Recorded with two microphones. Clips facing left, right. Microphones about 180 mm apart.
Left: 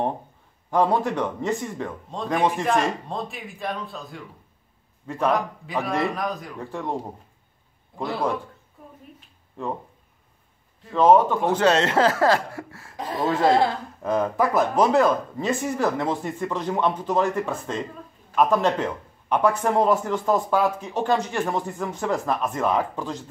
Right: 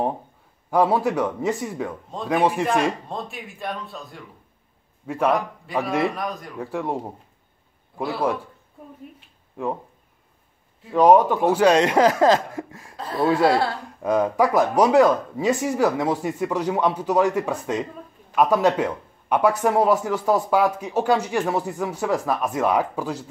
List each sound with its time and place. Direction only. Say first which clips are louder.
0.7 s a man's voice: right 2 dB; 10° right (ahead or behind)
8.0 s a man's voice: right 2 dB; 5° right (ahead or behind)
10.9 s speech: right 2 dB; 10° right (ahead or behind)
12.9 s speech: right 3 dB; 15° left (ahead or behind)
13.3 s speech: even; 10° right (ahead or behind)